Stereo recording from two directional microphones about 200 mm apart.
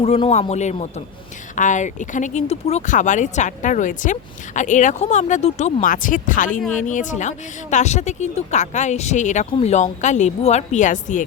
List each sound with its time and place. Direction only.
0.0 s speech: 30° left (ahead or behind)